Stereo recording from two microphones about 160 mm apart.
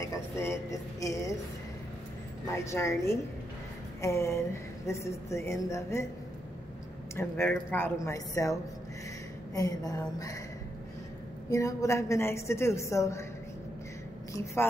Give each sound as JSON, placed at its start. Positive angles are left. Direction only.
{"t": 0.0, "sound": "a sound", "side_deg": 20}
{"t": 2.4, "sound": "a woman's voice", "side_deg": 20}
{"t": 7.2, "sound": "a woman's voice", "side_deg": 15}
{"t": 11.5, "sound": "a woman's voice", "side_deg": 20}
{"t": 14.3, "sound": "a woman's voice", "side_deg": 20}